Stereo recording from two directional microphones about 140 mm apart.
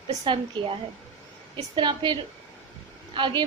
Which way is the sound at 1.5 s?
30° right (ahead or behind).